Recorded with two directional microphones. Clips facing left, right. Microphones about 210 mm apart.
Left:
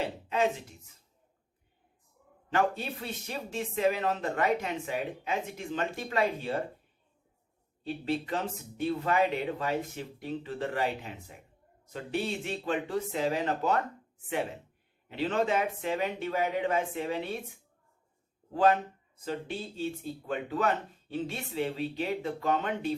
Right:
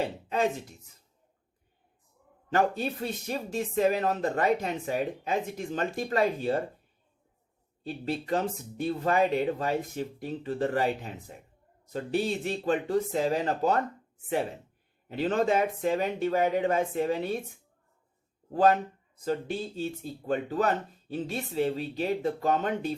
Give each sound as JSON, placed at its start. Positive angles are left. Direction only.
{"t": 2.5, "sound": "speech", "side_deg": -40}
{"t": 7.9, "sound": "speech", "side_deg": -40}
{"t": 15.1, "sound": "speech", "side_deg": -40}
{"t": 18.5, "sound": "speech", "side_deg": -40}